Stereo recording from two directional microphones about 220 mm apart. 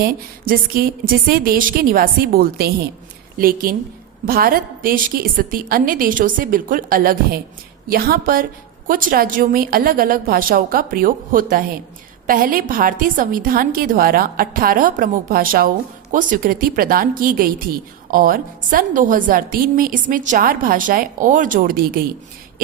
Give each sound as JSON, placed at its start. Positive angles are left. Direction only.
{"t": 0.0, "sound": "a woman's voice", "side_deg": -40}